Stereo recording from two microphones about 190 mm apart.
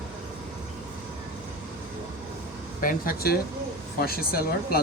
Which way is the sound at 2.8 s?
50° left (ahead or behind).